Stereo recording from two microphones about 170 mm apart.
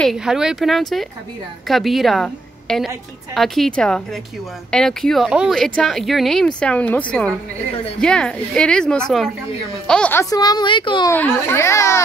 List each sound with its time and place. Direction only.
0.0 s a woman's voice: centre (ahead or behind)
10.3 s a woman's voice: 25° left (ahead or behind)
11.1 s a child's voice: 15° left (ahead or behind)